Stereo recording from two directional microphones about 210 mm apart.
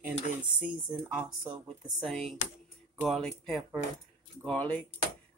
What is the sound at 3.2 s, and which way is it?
Speech, centre (ahead or behind).